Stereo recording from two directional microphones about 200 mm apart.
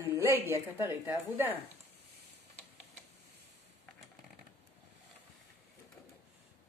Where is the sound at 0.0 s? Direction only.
10° right (ahead or behind).